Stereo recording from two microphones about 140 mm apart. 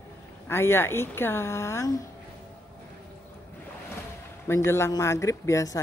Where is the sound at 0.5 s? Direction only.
15° left (ahead or behind).